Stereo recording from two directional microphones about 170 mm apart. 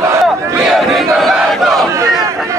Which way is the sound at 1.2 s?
Centre (ahead or behind).